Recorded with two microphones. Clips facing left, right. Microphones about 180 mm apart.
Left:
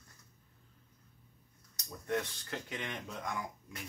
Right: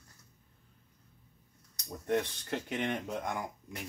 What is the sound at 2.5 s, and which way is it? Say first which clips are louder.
Speech: right 7 dB; 55° right (ahead or behind).